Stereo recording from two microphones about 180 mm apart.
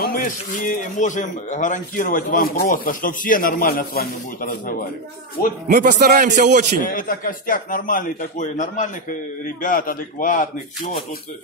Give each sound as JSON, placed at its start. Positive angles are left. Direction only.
{"t": 0.0, "sound": "speech", "side_deg": 50}
{"t": 5.7, "sound": "a man's voice", "side_deg": -45}
{"t": 6.8, "sound": "speech", "side_deg": 50}